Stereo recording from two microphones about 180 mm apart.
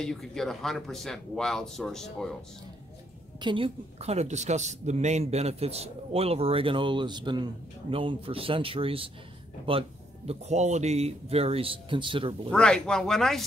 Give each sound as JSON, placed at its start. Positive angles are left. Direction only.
{"t": 0.0, "sound": "speech", "side_deg": 5}
{"t": 3.3, "sound": "a woman's voice", "side_deg": -25}
{"t": 12.4, "sound": "speech", "side_deg": 5}